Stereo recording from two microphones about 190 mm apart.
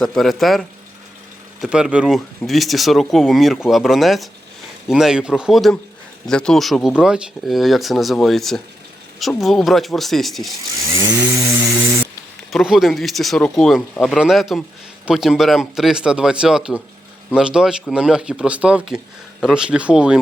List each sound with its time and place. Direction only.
0.0 s speech: centre (ahead or behind)
1.6 s speech: 5° right (ahead or behind)
10.8 s chainsaw: 20° right (ahead or behind)
12.5 s speech: centre (ahead or behind)